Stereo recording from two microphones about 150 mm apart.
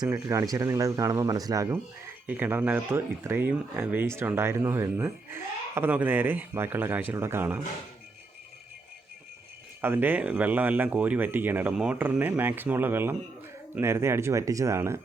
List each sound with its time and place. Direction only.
0.0 s speech: 20° right (ahead or behind)
9.8 s speech: 15° right (ahead or behind)